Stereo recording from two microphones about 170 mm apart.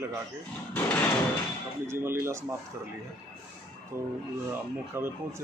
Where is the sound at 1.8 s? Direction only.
15° right (ahead or behind).